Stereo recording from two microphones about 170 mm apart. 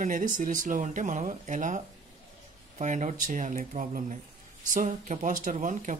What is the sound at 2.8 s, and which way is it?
Speech, 45° right (ahead or behind).